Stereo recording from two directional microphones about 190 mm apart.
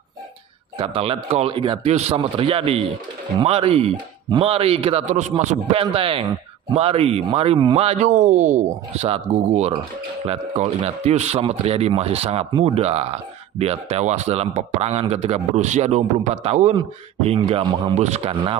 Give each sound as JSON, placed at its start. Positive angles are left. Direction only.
{"t": 0.7, "sound": "a man's voice", "side_deg": -30}